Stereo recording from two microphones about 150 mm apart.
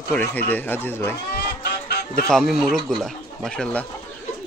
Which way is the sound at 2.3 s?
Centre (ahead or behind).